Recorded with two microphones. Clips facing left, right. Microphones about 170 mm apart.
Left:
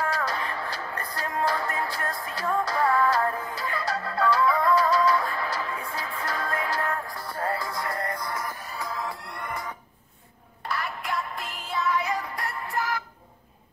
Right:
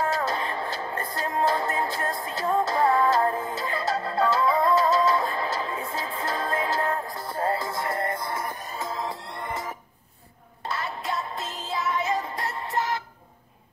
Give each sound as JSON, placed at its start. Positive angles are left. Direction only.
{"t": 0.0, "sound": "music", "side_deg": -25}